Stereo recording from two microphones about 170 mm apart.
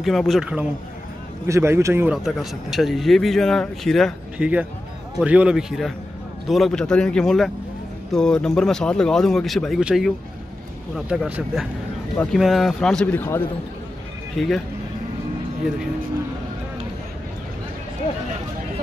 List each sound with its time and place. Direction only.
0.0 s speech: centre (ahead or behind)
1.5 s a man's voice: 15° right (ahead or behind)
2.2 s speech: centre (ahead or behind)
14.3 s speech: centre (ahead or behind)